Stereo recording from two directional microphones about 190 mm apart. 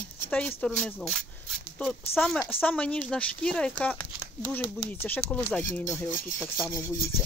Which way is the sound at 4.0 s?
15° left (ahead or behind).